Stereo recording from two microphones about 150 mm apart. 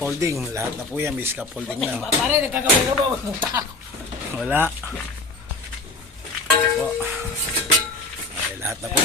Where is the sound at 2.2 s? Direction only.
15° right (ahead or behind).